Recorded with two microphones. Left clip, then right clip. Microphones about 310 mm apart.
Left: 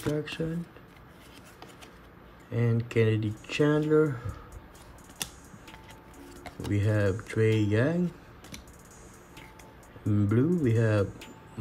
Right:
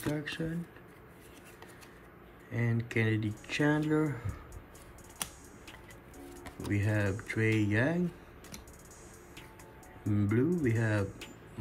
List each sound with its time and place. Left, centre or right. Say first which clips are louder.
0.0 s speech: left 4 dB; centre
2.5 s speech: left 5 dB; centre
6.6 s speech: left 5 dB; centre
10.0 s speech: left 3 dB; centre